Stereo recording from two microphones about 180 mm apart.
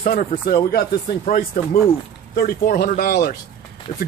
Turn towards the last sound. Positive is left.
turn(degrees=50)  # may be behind; listen again after turning